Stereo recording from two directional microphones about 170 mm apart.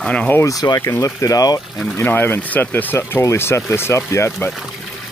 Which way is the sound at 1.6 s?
Centre (ahead or behind).